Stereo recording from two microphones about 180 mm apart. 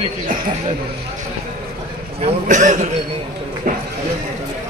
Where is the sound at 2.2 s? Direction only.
40° right (ahead or behind).